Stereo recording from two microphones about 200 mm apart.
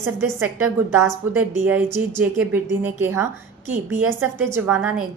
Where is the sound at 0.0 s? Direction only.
10° right (ahead or behind).